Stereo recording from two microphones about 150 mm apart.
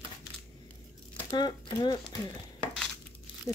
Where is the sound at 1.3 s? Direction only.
30° left (ahead or behind).